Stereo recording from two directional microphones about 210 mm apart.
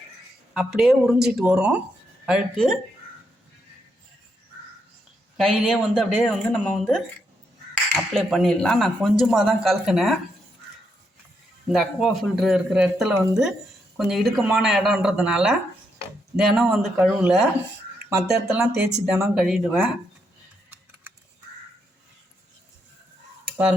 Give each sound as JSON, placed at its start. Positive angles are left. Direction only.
{"t": 0.5, "sound": "speech", "side_deg": 0}
{"t": 5.4, "sound": "speech", "side_deg": 0}
{"t": 8.1, "sound": "speech", "side_deg": 0}
{"t": 11.7, "sound": "speech", "side_deg": 0}
{"t": 18.7, "sound": "speech", "side_deg": -50}
{"t": 19.3, "sound": "speech", "side_deg": 0}